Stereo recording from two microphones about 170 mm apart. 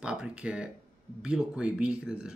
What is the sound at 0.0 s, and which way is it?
Speech, 5° right (ahead or behind).